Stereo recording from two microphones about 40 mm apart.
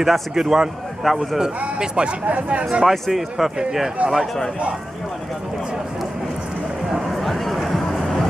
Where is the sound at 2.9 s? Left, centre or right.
Centre.